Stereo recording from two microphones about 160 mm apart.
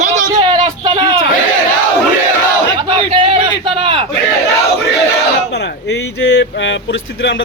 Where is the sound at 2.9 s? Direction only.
35° right (ahead or behind).